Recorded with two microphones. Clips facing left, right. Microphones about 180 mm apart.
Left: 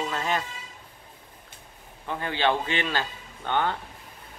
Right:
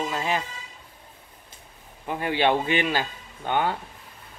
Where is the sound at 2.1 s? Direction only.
15° right (ahead or behind).